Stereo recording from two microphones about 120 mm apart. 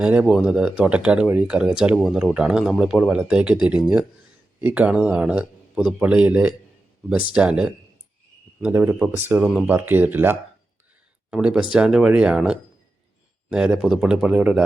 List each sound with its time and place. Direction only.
0.0 s speech: 10° right (ahead or behind)